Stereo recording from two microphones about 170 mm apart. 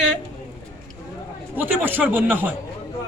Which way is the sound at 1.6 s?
10° right (ahead or behind).